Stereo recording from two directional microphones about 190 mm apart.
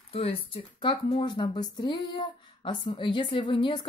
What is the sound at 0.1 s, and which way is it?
Speech, 30° left (ahead or behind).